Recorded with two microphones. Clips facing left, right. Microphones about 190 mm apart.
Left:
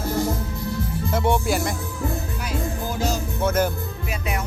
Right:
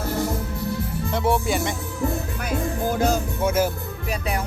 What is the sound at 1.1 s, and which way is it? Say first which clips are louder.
Music: even; centre (ahead or behind).